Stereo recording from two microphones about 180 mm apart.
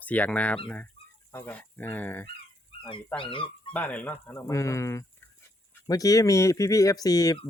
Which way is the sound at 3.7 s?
10° left (ahead or behind).